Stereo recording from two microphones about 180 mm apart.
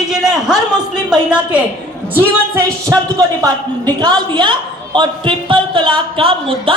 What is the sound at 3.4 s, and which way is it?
A woman's voice, 20° right (ahead or behind).